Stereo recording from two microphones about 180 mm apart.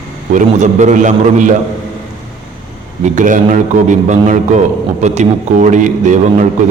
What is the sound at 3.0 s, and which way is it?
A man's voice, 45° right (ahead or behind).